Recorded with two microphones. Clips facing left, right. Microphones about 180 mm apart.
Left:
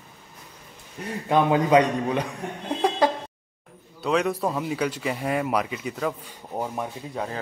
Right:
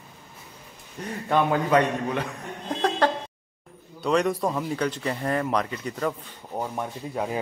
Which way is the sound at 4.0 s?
Centre (ahead or behind).